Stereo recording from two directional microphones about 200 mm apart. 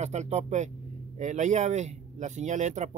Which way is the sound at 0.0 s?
35° right (ahead or behind).